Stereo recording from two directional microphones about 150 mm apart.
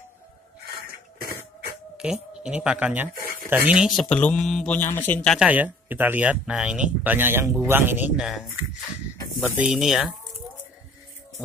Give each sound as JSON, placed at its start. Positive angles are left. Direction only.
{"t": 1.2, "sound": "music", "side_deg": -85}
{"t": 2.0, "sound": "speech", "side_deg": -5}
{"t": 4.0, "sound": "speech", "side_deg": 10}
{"t": 5.4, "sound": "speech", "side_deg": -10}
{"t": 8.2, "sound": "speech", "side_deg": 0}